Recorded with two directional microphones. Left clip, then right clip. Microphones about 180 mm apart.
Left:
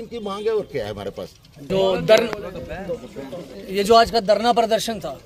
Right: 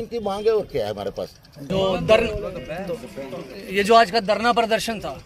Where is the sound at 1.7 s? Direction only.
15° left (ahead or behind).